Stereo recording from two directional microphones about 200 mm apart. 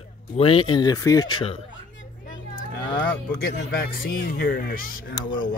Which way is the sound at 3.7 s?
45° left (ahead or behind).